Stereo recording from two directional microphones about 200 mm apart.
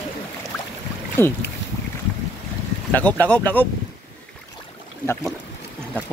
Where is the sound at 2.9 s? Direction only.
10° left (ahead or behind).